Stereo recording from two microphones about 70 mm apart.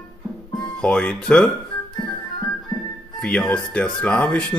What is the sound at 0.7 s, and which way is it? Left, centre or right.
Speech, centre.